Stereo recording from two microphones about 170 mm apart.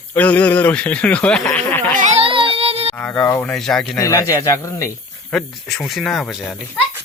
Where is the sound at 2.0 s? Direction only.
40° right (ahead or behind).